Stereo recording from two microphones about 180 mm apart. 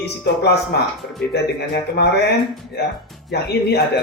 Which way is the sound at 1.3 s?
65° left (ahead or behind).